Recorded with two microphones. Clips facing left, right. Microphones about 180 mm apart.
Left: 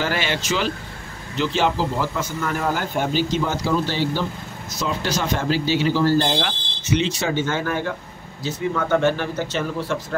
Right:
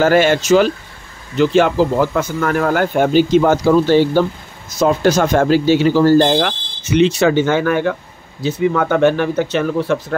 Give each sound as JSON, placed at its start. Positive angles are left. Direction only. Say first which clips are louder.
{"t": 0.0, "sound": "speech", "louder": "right 12 dB", "side_deg": -50}